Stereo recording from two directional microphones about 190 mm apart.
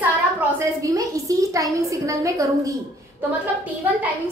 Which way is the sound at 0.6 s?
15° right (ahead or behind).